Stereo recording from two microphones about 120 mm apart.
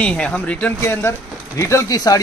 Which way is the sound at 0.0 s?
10° left (ahead or behind).